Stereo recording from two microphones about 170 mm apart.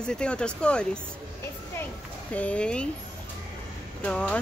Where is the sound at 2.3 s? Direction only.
10° left (ahead or behind).